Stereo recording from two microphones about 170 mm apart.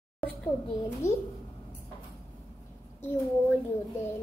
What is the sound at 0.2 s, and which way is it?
Speech, 10° left (ahead or behind).